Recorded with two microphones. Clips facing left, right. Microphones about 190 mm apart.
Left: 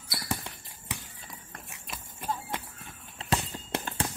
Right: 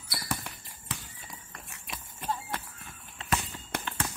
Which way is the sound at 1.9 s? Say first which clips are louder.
Even; centre (ahead or behind).